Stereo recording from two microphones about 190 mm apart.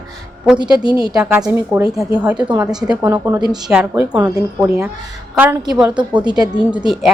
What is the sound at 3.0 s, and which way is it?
Speech, 20° right (ahead or behind).